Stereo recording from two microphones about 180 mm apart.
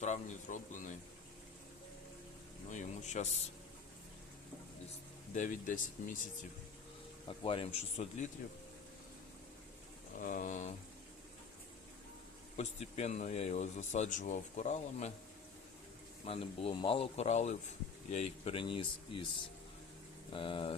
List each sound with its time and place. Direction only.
0.0 s speech: 40° left (ahead or behind)
2.6 s speech: 40° left (ahead or behind)
5.3 s speech: 45° left (ahead or behind)
7.3 s speech: 30° left (ahead or behind)
10.2 s speech: 45° left (ahead or behind)
12.5 s speech: 35° left (ahead or behind)
16.2 s speech: 30° left (ahead or behind)
20.3 s speech: 30° left (ahead or behind)